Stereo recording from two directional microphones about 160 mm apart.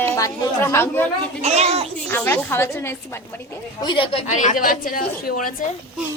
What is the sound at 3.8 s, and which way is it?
Speech, 30° left (ahead or behind).